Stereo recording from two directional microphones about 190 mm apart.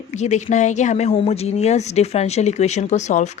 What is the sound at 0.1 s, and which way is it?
Speech, 35° left (ahead or behind).